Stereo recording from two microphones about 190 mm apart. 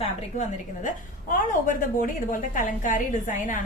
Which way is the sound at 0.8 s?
45° left (ahead or behind).